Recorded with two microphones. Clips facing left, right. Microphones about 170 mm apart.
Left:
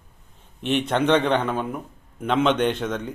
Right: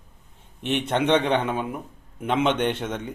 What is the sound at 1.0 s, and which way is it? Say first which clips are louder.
Speech: even; 15° right (ahead or behind).